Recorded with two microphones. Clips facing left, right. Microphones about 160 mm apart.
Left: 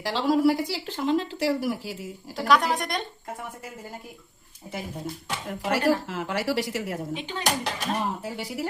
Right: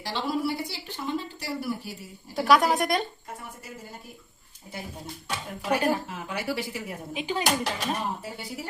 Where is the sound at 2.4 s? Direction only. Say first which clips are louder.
Right 2 dB; 5° right (ahead or behind).